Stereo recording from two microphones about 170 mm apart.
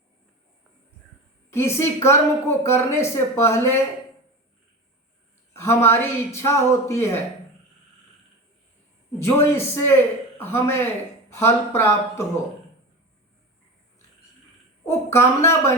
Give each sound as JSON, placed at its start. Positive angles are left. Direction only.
{"t": 1.5, "sound": "a woman's voice", "side_deg": 15}
{"t": 5.5, "sound": "a woman's voice", "side_deg": 15}
{"t": 9.1, "sound": "a woman's voice", "side_deg": 15}
{"t": 14.8, "sound": "speech", "side_deg": 15}